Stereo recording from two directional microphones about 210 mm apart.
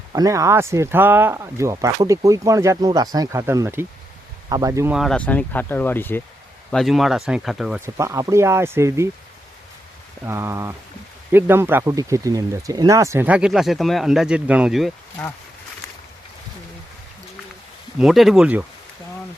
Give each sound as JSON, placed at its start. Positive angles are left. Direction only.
{"t": 0.1, "sound": "speech", "side_deg": -15}
{"t": 4.9, "sound": "speech", "side_deg": 5}
{"t": 7.9, "sound": "speech", "side_deg": -15}
{"t": 10.2, "sound": "speech", "side_deg": -10}
{"t": 18.0, "sound": "speech", "side_deg": 0}